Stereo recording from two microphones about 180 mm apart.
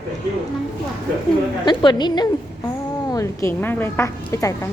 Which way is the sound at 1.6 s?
25° left (ahead or behind).